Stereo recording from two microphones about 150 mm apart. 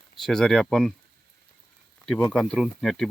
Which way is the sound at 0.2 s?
Centre (ahead or behind).